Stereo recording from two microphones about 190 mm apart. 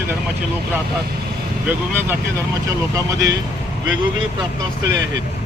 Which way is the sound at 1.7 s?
10° right (ahead or behind).